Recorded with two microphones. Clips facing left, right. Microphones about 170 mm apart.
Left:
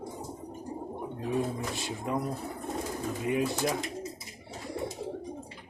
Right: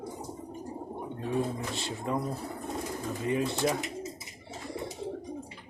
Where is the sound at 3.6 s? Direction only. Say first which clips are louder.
Right 1 dB; centre (ahead or behind).